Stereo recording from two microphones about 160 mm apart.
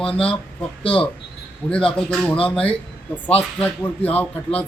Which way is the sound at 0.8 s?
35° left (ahead or behind).